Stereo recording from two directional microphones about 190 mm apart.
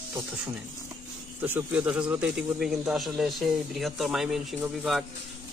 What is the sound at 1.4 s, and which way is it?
Speech, 10° right (ahead or behind).